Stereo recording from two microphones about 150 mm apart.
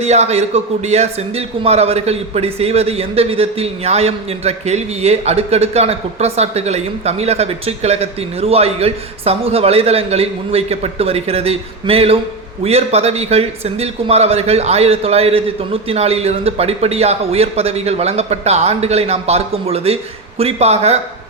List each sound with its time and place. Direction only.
0.0 s a man's voice: 45° right (ahead or behind)